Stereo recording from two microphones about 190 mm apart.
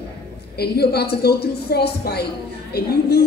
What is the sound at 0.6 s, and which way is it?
A woman's voice, 55° left (ahead or behind).